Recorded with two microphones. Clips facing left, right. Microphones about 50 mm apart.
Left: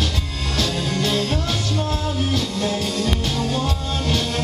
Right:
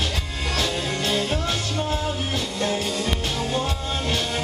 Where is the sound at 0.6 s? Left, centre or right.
Centre.